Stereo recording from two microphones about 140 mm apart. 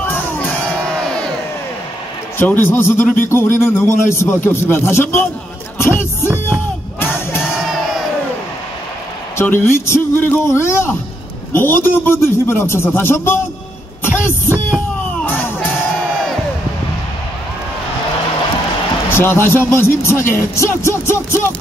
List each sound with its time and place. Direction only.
0.0 s crowd: 10° left (ahead or behind)
2.3 s speech: 15° left (ahead or behind)
7.0 s music: 15° left (ahead or behind)
9.4 s speech: 20° left (ahead or behind)
14.1 s a sound: 15° left (ahead or behind)
15.2 s music: 15° left (ahead or behind)
19.0 s speech: 15° left (ahead or behind)